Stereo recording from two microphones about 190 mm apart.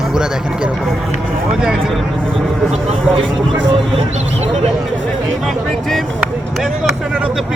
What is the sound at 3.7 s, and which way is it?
Speech, 30° right (ahead or behind).